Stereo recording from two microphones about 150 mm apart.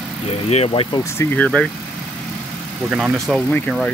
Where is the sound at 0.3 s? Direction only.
45° left (ahead or behind).